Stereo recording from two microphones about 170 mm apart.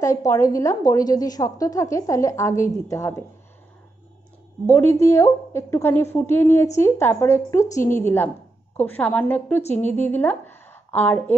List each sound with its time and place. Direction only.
0.0 s a woman's voice: 20° left (ahead or behind)
4.7 s a woman's voice: 15° left (ahead or behind)